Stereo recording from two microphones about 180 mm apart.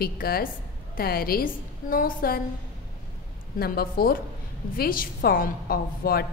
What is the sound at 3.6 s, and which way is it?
A woman's voice, 55° left (ahead or behind).